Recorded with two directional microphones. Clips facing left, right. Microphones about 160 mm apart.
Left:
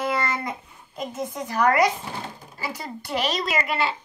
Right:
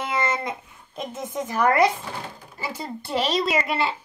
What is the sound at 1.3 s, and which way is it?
Speech, 25° right (ahead or behind).